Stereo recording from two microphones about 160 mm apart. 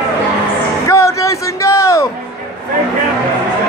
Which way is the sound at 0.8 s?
20° left (ahead or behind).